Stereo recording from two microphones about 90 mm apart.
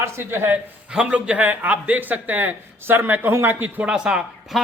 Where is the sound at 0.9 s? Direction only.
10° right (ahead or behind).